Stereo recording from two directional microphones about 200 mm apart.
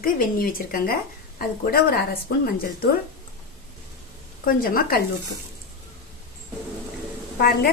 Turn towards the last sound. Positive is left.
turn(degrees=50)  # may be behind; listen again after turning